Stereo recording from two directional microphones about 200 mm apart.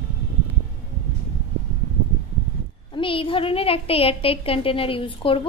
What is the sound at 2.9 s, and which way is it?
A woman's voice, 25° left (ahead or behind).